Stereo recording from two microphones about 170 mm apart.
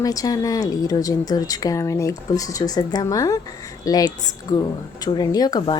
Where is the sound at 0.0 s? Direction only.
20° left (ahead or behind).